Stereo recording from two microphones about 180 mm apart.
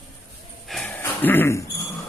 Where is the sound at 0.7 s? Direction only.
5° left (ahead or behind).